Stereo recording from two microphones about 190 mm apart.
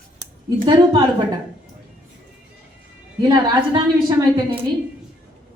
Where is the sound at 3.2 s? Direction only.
20° right (ahead or behind).